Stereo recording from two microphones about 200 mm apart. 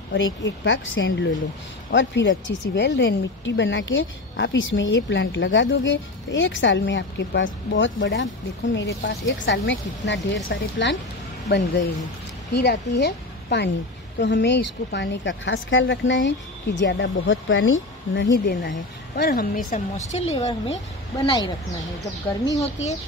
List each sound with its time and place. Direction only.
0.1 s speech: 65° left (ahead or behind)
12.5 s speech: 55° left (ahead or behind); by 18.3 s 70° left (ahead or behind)
18.6 s a woman's voice: 60° left (ahead or behind); by 20.7 s 30° left (ahead or behind)
21.3 s speech: 20° left (ahead or behind)
22.6 s a woman's voice: 35° left (ahead or behind)